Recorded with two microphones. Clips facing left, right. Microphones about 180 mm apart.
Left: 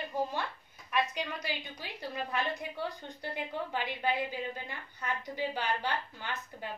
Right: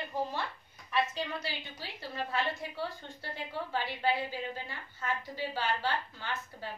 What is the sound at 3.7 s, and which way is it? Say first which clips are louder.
A woman's voice: right 2 dB; 15° left (ahead or behind).